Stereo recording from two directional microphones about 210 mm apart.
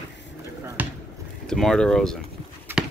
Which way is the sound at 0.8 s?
10° right (ahead or behind).